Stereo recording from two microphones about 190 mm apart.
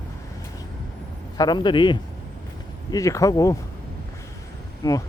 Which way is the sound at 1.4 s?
25° left (ahead or behind).